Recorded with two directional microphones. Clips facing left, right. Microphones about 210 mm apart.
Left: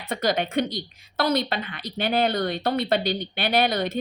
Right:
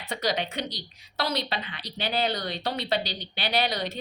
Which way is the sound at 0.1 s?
55° left (ahead or behind).